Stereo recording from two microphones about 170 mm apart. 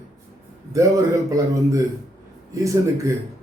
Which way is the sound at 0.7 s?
20° right (ahead or behind).